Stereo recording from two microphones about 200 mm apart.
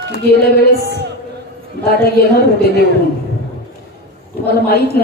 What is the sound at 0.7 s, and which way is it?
Speech, 55° right (ahead or behind).